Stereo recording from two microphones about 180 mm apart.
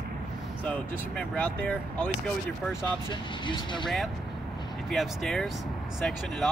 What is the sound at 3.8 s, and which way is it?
Speech, centre (ahead or behind).